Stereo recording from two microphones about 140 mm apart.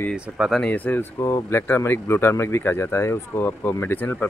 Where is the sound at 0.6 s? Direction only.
10° left (ahead or behind).